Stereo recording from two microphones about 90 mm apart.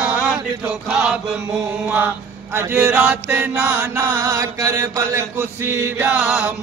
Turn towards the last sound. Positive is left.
turn(degrees=-15)  # may be behind; listen again after turning